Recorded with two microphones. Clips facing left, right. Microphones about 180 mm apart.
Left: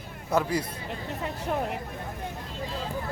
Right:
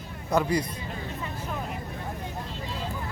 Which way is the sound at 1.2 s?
70° left (ahead or behind).